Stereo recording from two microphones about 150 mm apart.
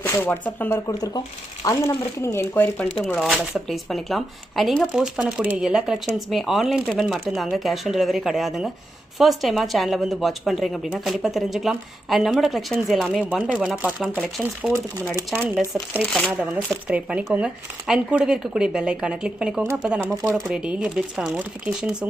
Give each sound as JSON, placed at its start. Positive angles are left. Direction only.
{"t": 0.0, "sound": "speech", "side_deg": 15}
{"t": 3.2, "sound": "speech", "side_deg": 0}
{"t": 14.7, "sound": "speech", "side_deg": -20}
{"t": 16.0, "sound": "speech", "side_deg": 5}
{"t": 16.6, "sound": "speech", "side_deg": -10}